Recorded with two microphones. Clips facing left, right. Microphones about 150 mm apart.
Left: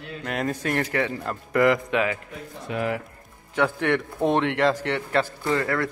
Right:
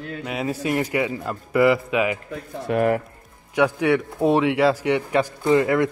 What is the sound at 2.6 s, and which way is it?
Speech, 50° right (ahead or behind).